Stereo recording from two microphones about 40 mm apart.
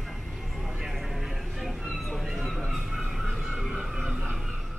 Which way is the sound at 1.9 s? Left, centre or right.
Centre.